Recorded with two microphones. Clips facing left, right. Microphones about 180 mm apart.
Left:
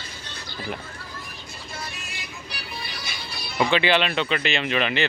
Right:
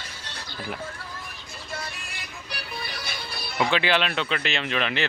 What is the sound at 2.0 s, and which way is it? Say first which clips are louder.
Music: left 2 dB; 55° right (ahead or behind).